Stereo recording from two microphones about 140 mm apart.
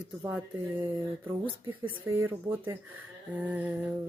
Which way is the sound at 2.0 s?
15° right (ahead or behind).